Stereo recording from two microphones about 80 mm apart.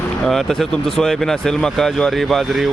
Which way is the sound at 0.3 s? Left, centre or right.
Centre.